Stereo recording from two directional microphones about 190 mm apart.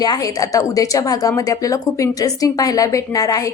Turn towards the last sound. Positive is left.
turn(degrees=20)  # may be behind; listen again after turning